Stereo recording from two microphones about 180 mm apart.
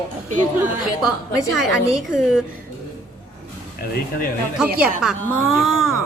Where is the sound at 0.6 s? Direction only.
5° right (ahead or behind).